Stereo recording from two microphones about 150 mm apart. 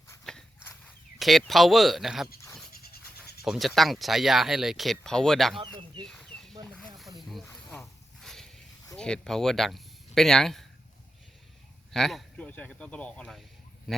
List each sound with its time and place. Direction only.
0.3 s horse: 5° left (ahead or behind)
1.2 s speech: centre (ahead or behind)
2.7 s a sound: 90° left
3.4 s speech: centre (ahead or behind)
6.1 s a sound: 5° left (ahead or behind)
6.7 s snake: 5° left (ahead or behind)
7.5 s a sound: 5° left (ahead or behind)
9.0 s speech: 5° left (ahead or behind)
11.9 s speech: centre (ahead or behind)